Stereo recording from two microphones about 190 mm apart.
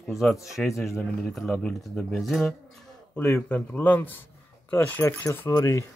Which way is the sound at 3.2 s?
10° left (ahead or behind).